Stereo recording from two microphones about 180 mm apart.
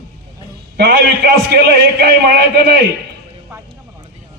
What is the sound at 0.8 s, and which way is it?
A man's voice, 65° right (ahead or behind).